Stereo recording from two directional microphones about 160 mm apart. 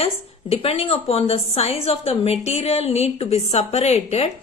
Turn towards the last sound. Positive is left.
turn(degrees=40)  # may be behind; listen again after turning